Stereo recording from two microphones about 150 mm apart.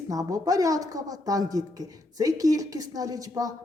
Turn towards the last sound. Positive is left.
turn(degrees=-25)  # may be behind; listen again after turning